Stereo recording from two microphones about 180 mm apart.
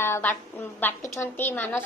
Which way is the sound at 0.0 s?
10° left (ahead or behind).